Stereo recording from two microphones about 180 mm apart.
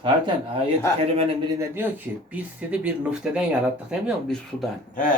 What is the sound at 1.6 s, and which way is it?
Speech, 10° right (ahead or behind).